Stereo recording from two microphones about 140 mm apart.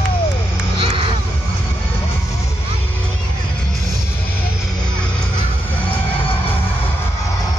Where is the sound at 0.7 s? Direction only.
40° right (ahead or behind).